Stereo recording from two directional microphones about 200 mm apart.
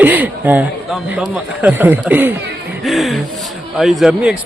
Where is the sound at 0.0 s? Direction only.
10° right (ahead or behind).